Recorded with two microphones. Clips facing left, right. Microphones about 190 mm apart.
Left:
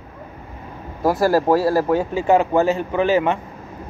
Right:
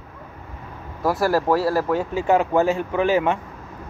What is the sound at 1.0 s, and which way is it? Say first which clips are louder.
Speech: left 3 dB; 15° left (ahead or behind).